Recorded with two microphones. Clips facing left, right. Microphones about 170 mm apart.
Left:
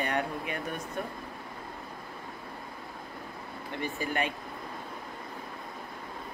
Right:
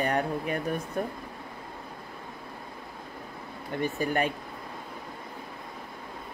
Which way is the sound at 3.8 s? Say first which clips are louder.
Right 4 dB; 45° right (ahead or behind).